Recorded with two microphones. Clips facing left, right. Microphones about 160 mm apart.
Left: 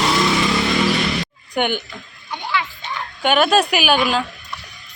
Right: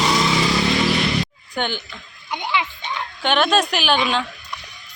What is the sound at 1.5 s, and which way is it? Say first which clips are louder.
Speech: left 5 dB; 15° left (ahead or behind).